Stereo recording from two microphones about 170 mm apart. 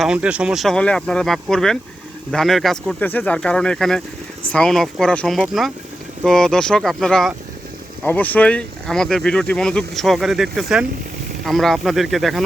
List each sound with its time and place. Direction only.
0.0 s speech: 5° right (ahead or behind)